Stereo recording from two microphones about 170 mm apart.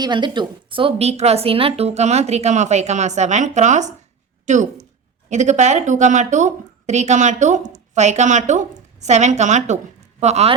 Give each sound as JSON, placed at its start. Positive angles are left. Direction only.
{"t": 0.0, "sound": "a woman's voice", "side_deg": -25}